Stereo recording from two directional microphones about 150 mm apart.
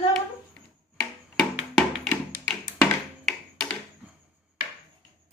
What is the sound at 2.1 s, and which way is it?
Music, 10° left (ahead or behind).